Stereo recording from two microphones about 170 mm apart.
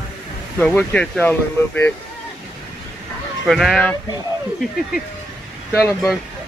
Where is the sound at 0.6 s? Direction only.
10° left (ahead or behind).